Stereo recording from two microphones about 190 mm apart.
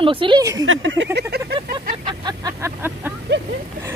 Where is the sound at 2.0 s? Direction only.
25° right (ahead or behind).